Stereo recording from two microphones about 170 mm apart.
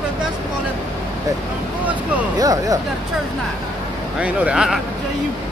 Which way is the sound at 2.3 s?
20° right (ahead or behind).